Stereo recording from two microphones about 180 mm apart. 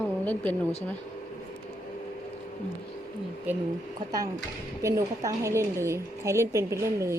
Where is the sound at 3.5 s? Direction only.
10° right (ahead or behind).